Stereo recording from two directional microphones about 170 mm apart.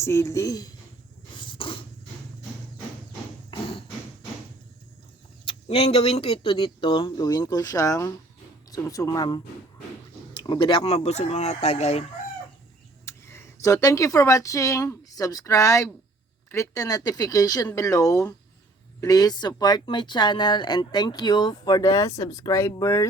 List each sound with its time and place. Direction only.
0.0 s speech: 15° left (ahead or behind)
1.4 s dog: 30° left (ahead or behind)
3.5 s hammer: 30° left (ahead or behind)
5.5 s speech: 35° left (ahead or behind)
13.1 s speech: 15° left (ahead or behind)